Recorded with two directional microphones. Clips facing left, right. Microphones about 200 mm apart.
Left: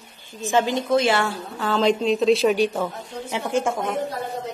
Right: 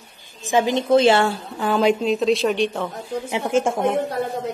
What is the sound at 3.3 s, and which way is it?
Speech, 20° right (ahead or behind).